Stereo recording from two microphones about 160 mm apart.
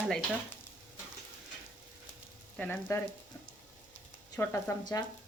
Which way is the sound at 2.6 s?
15° left (ahead or behind).